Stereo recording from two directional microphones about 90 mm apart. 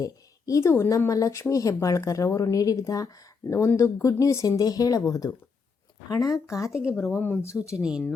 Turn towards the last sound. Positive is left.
turn(degrees=-10)  # may be behind; listen again after turning